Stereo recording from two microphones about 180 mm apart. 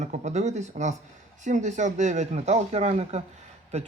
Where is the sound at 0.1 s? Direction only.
40° right (ahead or behind).